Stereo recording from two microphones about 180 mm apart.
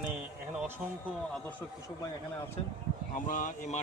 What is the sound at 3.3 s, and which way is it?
Speech, 45° left (ahead or behind).